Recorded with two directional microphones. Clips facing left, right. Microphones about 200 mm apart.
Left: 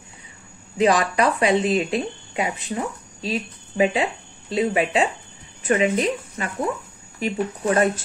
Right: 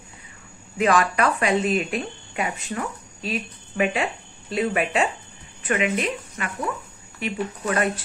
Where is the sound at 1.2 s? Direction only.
30° left (ahead or behind).